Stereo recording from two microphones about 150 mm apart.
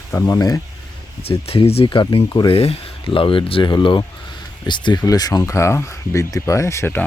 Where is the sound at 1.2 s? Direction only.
40° left (ahead or behind); by 7.0 s 15° left (ahead or behind).